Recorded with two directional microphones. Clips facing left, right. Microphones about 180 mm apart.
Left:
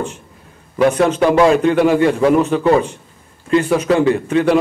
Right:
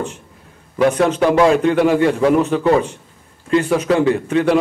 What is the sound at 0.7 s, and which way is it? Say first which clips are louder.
A man's voice: left 1 dB; 20° left (ahead or behind).